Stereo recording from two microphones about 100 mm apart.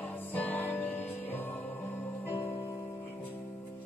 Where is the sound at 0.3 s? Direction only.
15° left (ahead or behind).